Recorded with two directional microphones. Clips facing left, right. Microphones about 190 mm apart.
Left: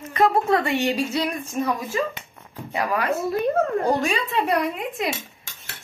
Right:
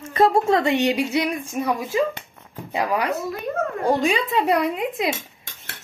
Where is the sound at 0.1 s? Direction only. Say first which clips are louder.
Right 2 dB; 25° right (ahead or behind).